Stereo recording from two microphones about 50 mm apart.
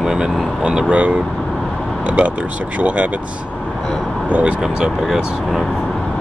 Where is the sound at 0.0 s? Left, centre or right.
Centre.